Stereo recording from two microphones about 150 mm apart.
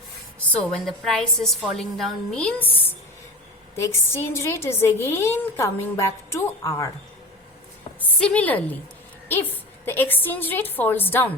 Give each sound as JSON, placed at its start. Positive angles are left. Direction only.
{"t": 0.7, "sound": "a woman's voice", "side_deg": 5}
{"t": 7.9, "sound": "a woman's voice", "side_deg": 10}